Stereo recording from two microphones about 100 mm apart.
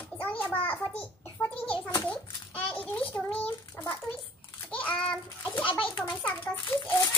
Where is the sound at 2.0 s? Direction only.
15° left (ahead or behind).